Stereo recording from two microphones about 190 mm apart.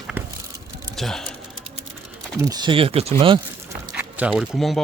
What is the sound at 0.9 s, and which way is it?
Speech, centre (ahead or behind).